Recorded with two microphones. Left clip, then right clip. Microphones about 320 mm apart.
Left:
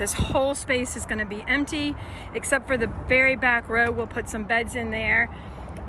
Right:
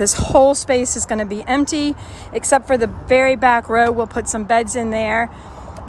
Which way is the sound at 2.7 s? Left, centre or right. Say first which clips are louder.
Right 7 dB; centre.